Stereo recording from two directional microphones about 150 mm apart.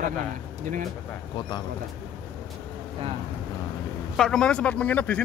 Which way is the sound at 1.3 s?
30° left (ahead or behind).